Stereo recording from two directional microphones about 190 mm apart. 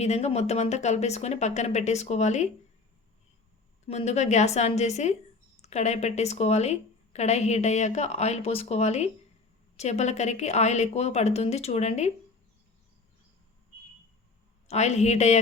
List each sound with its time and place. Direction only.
0.0 s a woman's voice: 35° left (ahead or behind)
3.8 s a woman's voice: 35° left (ahead or behind)
14.7 s a woman's voice: 35° left (ahead or behind)